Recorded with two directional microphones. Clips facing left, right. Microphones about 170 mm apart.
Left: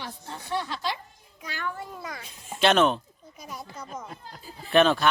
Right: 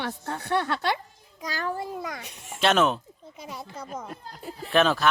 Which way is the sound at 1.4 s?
40° right (ahead or behind).